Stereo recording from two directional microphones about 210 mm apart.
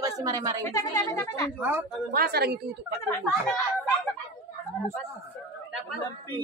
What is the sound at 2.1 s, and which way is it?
Speech, 45° right (ahead or behind).